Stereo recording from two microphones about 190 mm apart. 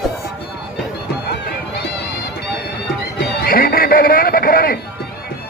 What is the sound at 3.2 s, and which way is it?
Music, 60° left (ahead or behind).